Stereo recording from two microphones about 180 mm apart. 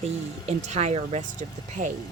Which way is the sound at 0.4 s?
40° right (ahead or behind).